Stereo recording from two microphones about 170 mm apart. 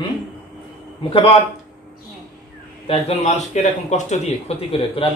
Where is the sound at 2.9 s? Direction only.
35° left (ahead or behind).